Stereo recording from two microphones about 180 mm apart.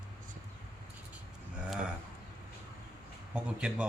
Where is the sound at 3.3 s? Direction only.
5° right (ahead or behind).